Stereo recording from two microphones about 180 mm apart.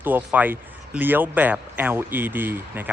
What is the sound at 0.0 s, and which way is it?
Speech, 10° right (ahead or behind).